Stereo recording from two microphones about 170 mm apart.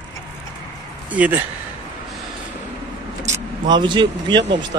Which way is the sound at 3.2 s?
20° right (ahead or behind).